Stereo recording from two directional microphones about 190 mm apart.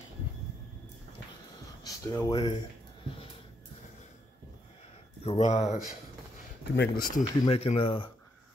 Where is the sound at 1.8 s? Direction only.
15° left (ahead or behind).